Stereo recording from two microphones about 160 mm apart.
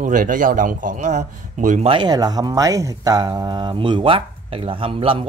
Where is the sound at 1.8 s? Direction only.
30° right (ahead or behind).